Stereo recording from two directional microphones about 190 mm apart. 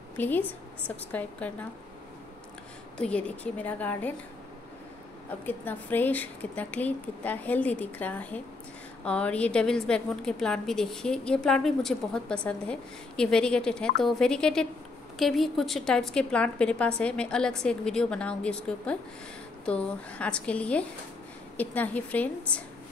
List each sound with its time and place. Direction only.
0.2 s a woman's voice: 10° left (ahead or behind)
3.0 s a woman's voice: 5° left (ahead or behind)
5.4 s a woman's voice: 10° left (ahead or behind)